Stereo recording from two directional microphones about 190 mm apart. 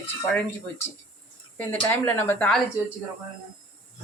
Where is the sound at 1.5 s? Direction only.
10° left (ahead or behind).